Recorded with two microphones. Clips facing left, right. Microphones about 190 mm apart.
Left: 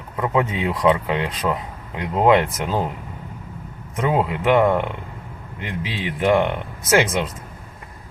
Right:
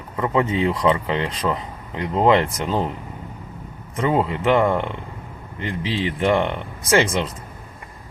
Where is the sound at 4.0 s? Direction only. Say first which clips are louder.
Even; centre (ahead or behind).